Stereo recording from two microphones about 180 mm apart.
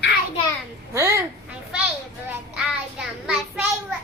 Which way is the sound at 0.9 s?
15° right (ahead or behind).